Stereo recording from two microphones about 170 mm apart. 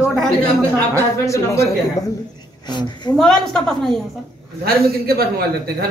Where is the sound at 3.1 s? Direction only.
Centre (ahead or behind).